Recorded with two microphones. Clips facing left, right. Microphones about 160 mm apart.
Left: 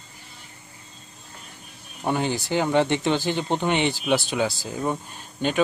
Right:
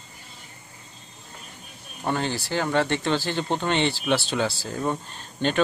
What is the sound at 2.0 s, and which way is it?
Speech, 15° left (ahead or behind).